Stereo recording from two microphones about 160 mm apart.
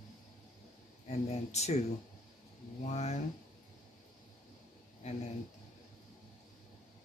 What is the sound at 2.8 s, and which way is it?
Speech, 45° left (ahead or behind).